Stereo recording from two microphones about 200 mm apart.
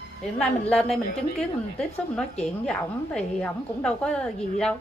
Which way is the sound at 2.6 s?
5° left (ahead or behind).